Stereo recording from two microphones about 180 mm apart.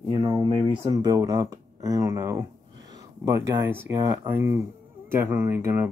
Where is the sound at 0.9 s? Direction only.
20° right (ahead or behind).